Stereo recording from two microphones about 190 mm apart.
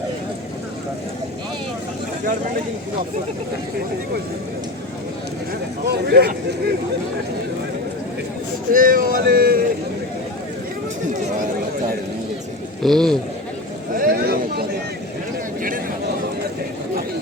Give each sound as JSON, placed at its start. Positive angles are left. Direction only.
{"t": 5.9, "sound": "speech", "side_deg": -55}
{"t": 8.7, "sound": "speech", "side_deg": -50}
{"t": 12.8, "sound": "a man's voice", "side_deg": 0}
{"t": 13.9, "sound": "a sound", "side_deg": -50}